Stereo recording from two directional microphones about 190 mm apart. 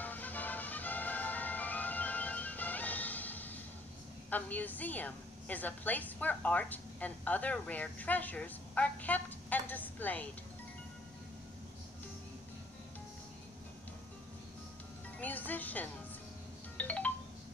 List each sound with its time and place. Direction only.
0.0 s music: 10° left (ahead or behind)
4.3 s a woman's voice: 10° left (ahead or behind)
15.1 s music: 10° left (ahead or behind)
16.7 s wind chime: 5° left (ahead or behind)